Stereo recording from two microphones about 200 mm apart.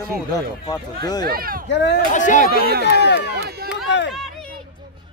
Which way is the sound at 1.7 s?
60° left (ahead or behind).